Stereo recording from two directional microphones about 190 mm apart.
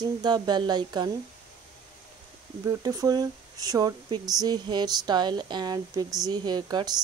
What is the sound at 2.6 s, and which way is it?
Speech, 20° right (ahead or behind).